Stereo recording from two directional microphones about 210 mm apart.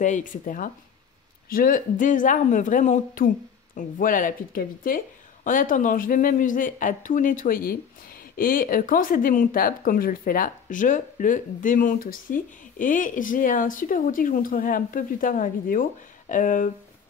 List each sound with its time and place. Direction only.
0.0 s speech: 35° left (ahead or behind)